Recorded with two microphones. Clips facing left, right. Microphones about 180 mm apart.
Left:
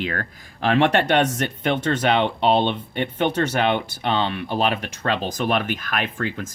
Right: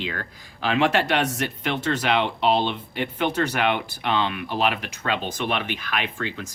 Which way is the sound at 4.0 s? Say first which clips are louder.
Left 2 dB; 35° left (ahead or behind).